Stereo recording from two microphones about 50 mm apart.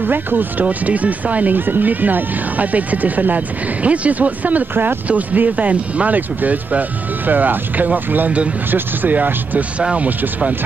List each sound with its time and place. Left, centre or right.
0.0 s speech: right